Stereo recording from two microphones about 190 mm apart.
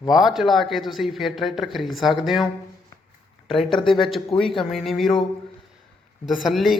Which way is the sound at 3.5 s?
25° left (ahead or behind).